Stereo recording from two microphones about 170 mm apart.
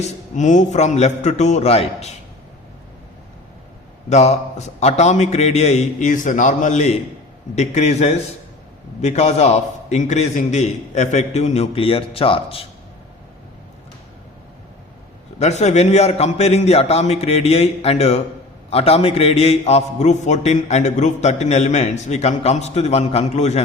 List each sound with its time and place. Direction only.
0.0 s a man's voice: 45° left (ahead or behind)
4.1 s a man's voice: 40° left (ahead or behind)
15.4 s a man's voice: 40° left (ahead or behind)